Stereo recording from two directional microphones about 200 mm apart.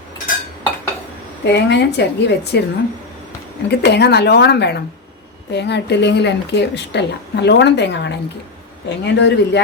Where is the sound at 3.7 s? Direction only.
55° left (ahead or behind).